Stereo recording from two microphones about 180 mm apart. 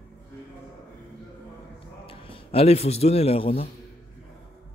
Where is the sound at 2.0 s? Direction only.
30° left (ahead or behind).